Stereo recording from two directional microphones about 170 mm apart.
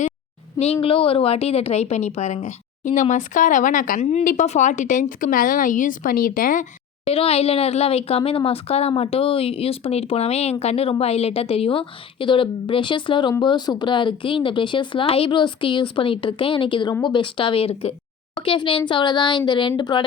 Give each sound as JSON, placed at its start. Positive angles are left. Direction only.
{"t": 0.6, "sound": "a woman's voice", "side_deg": 35}
{"t": 7.1, "sound": "a child's voice", "side_deg": 35}